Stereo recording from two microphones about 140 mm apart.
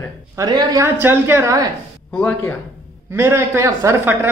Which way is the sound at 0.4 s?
30° right (ahead or behind).